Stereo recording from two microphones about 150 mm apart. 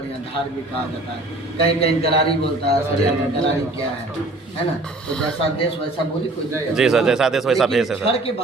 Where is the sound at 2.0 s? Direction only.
40° left (ahead or behind).